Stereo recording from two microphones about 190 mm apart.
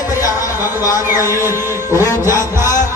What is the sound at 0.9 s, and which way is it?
Music, 10° right (ahead or behind).